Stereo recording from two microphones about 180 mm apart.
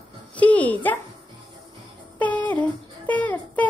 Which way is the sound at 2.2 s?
10° left (ahead or behind).